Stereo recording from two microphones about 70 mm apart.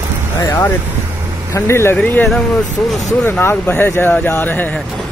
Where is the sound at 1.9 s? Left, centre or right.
Left.